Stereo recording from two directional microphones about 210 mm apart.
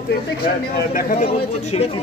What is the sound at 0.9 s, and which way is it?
Speech, 40° left (ahead or behind).